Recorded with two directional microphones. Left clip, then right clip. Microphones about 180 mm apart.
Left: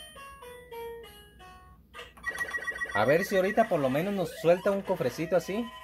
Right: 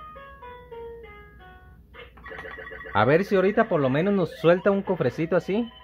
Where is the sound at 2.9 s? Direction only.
30° right (ahead or behind).